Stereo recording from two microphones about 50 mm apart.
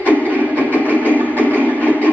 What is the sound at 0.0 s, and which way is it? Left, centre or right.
Train, right.